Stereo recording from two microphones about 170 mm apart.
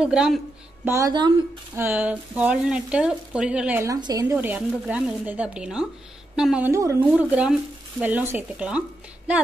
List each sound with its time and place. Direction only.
0.0 s a woman's voice: 5° right (ahead or behind)
0.8 s speech: 20° right (ahead or behind)
1.8 s speech: 10° right (ahead or behind)
4.4 s a woman's voice: 10° right (ahead or behind)
6.7 s speech: 15° right (ahead or behind)